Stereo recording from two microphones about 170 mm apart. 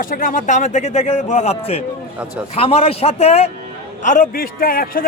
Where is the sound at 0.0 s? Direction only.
55° left (ahead or behind).